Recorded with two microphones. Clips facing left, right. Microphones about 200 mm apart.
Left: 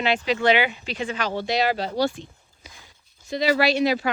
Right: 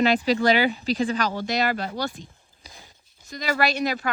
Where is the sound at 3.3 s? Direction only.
45° right (ahead or behind).